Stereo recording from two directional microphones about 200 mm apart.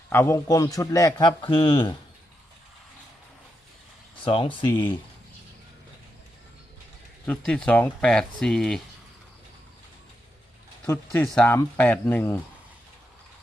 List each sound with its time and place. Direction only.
0.1 s a man's voice: 15° left (ahead or behind)
4.2 s speech: 25° left (ahead or behind)
4.7 s a man's voice: 15° left (ahead or behind)
7.3 s speech: 5° left (ahead or behind)
10.8 s a man's voice: 10° left (ahead or behind)